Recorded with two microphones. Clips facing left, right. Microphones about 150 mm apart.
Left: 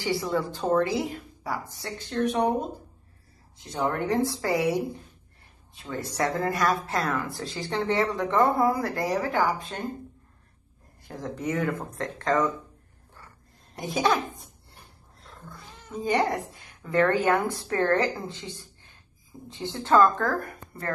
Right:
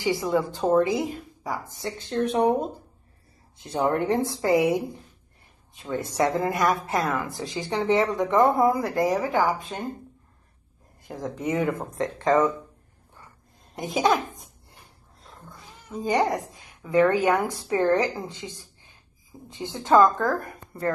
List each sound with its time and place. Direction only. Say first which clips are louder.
0.0 s a woman's voice: right 3 dB; 20° right (ahead or behind)
3.5 s a woman's voice: right 4 dB; 25° right (ahead or behind)
5.9 s a woman's voice: right 4 dB; 20° right (ahead or behind)
11.1 s a woman's voice: right 2 dB; 20° right (ahead or behind)
13.7 s a woman's voice: right 2 dB; 20° right (ahead or behind)
16.5 s a woman's voice: right 4 dB; 10° right (ahead or behind)